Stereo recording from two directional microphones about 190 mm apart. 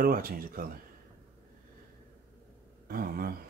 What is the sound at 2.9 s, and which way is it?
Speech, 50° right (ahead or behind).